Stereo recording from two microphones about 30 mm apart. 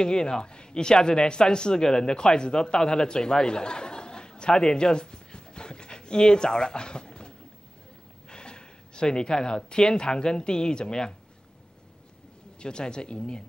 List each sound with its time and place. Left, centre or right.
0.0 s speech: left
1.9 s speech: centre
2.1 s speech: left
4.7 s pant: left
6.3 s speech: left
8.3 s a sound: left
9.0 s speech: centre
12.5 s speech: left